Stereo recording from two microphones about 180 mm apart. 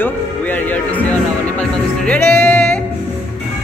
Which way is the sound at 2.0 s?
10° left (ahead or behind).